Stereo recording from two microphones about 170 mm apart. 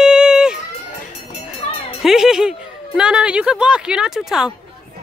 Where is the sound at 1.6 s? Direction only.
45° left (ahead or behind).